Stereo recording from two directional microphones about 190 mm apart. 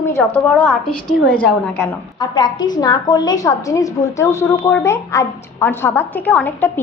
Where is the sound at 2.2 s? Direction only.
20° left (ahead or behind).